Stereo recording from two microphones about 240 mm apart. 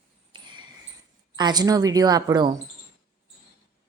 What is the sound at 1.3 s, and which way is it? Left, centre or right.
A woman's voice, centre.